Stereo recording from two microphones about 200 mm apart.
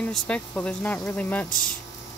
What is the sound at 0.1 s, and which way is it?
Speech, 5° left (ahead or behind).